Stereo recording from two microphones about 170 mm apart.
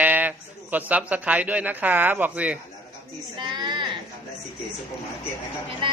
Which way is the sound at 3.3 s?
25° right (ahead or behind).